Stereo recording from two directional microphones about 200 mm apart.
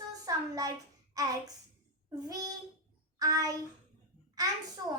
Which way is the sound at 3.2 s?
15° right (ahead or behind).